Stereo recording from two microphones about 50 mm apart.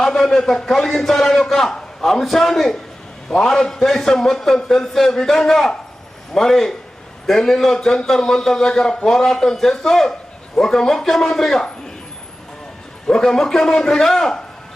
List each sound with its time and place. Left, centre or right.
0.0 s a man's voice: centre
13.1 s a man's voice: centre